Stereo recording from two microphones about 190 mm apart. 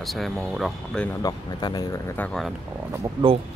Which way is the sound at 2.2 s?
Centre (ahead or behind).